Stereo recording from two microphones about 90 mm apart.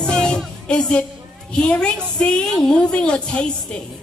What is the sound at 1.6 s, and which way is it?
A woman's voice, 10° left (ahead or behind).